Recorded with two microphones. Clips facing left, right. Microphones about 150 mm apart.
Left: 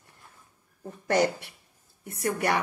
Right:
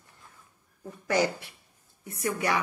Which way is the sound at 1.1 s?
60° left (ahead or behind).